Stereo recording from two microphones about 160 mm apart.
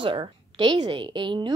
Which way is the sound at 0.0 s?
35° right (ahead or behind).